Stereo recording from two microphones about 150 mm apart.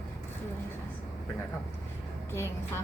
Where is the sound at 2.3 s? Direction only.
15° left (ahead or behind).